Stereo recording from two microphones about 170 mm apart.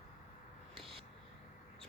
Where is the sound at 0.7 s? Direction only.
Centre (ahead or behind).